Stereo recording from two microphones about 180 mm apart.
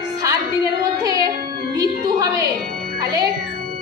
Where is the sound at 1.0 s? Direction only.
20° right (ahead or behind).